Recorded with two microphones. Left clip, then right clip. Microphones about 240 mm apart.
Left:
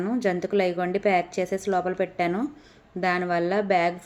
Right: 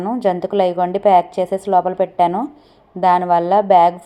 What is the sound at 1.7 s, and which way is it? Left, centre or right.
Speech, right.